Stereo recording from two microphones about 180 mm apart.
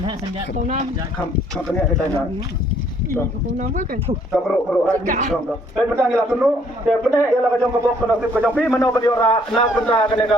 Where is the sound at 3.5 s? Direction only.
45° right (ahead or behind).